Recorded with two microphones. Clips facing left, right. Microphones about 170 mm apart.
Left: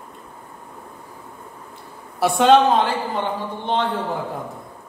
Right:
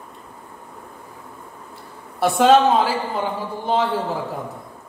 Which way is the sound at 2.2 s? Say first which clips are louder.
Even; centre (ahead or behind).